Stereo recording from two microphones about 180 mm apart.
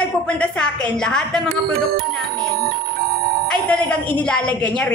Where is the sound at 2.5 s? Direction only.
55° right (ahead or behind).